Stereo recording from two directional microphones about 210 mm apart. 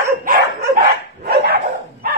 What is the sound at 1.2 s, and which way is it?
Dog, 45° right (ahead or behind).